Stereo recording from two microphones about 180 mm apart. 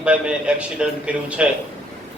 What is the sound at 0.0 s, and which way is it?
A man's voice, 5° right (ahead or behind).